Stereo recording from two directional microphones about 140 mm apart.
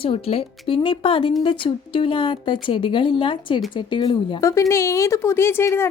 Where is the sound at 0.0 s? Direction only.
40° left (ahead or behind).